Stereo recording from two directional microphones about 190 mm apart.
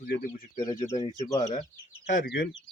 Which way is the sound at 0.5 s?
25° left (ahead or behind).